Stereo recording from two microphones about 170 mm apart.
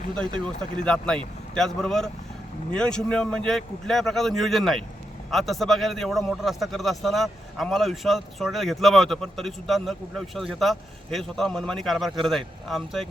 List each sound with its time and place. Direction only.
0.3 s a man's voice: 5° left (ahead or behind)